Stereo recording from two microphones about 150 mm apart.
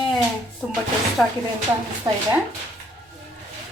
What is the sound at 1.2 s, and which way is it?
Speech, centre (ahead or behind).